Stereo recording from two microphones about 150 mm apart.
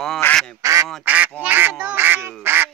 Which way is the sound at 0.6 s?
20° right (ahead or behind).